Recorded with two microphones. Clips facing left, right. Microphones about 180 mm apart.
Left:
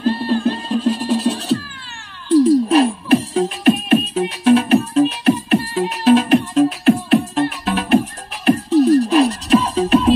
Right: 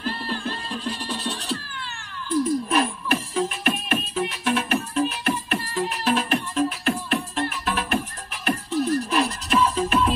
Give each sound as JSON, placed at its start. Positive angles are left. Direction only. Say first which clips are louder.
{"t": 0.0, "sound": "music", "louder": "left 12 dB", "side_deg": 35}